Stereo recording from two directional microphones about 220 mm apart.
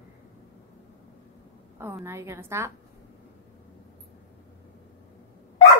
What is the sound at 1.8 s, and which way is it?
Speech, 10° right (ahead or behind).